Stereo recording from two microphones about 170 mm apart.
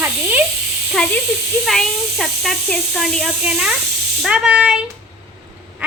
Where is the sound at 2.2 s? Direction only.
Centre (ahead or behind).